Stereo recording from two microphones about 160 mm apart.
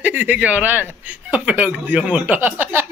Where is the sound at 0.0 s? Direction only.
10° right (ahead or behind).